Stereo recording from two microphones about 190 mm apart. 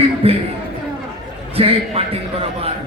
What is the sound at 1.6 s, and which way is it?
Speech, 30° right (ahead or behind).